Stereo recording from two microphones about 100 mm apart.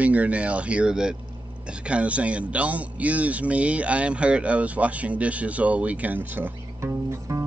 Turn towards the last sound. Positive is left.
turn(degrees=-30)  # may be behind; listen again after turning